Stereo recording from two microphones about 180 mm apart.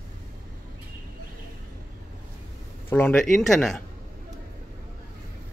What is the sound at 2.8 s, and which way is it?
Speech, 10° left (ahead or behind).